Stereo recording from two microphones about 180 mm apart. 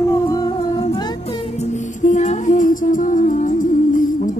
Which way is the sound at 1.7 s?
45° left (ahead or behind).